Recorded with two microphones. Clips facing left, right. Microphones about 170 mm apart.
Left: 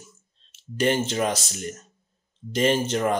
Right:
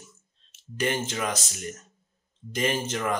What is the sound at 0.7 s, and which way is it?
Speech, 30° left (ahead or behind).